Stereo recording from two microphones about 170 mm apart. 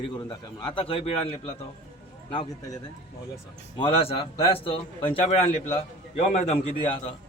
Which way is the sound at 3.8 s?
35° left (ahead or behind).